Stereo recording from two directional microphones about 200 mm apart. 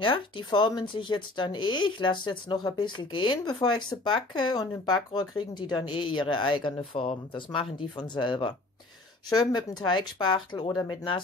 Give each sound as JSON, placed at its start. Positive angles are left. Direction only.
{"t": 0.0, "sound": "speech", "side_deg": 25}